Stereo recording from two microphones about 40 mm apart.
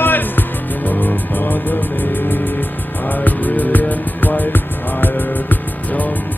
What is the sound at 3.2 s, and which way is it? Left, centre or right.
Music, left.